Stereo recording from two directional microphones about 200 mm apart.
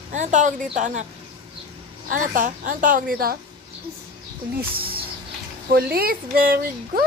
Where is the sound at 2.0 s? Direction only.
40° right (ahead or behind).